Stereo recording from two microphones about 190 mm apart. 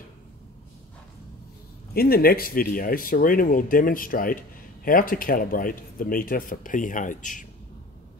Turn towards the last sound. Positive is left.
turn(degrees=45)  # may be behind; listen again after turning